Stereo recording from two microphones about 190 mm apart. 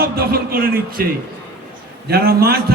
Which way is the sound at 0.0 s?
50° right (ahead or behind).